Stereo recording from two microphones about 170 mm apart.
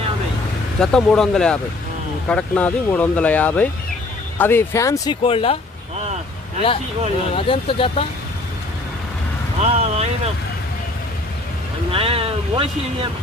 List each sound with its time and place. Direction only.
0.8 s speech: 5° left (ahead or behind)
5.2 s speech: 35° left (ahead or behind)
7.3 s speech: 30° left (ahead or behind)
9.6 s speech: 40° right (ahead or behind)
11.9 s speech: 35° right (ahead or behind)